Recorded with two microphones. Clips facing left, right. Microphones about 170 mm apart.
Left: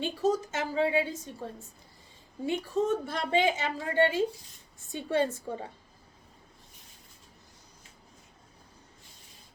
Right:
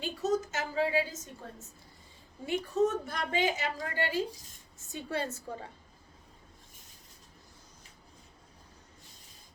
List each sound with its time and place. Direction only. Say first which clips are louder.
0.0 s a woman's voice: left 3 dB; 30° left (ahead or behind)